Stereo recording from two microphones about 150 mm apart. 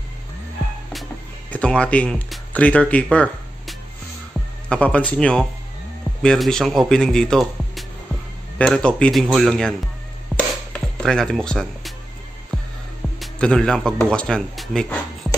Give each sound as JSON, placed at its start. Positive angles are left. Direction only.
{"t": 1.5, "sound": "speech", "side_deg": 5}
{"t": 10.3, "sound": "music", "side_deg": 5}
{"t": 13.2, "sound": "speech", "side_deg": 5}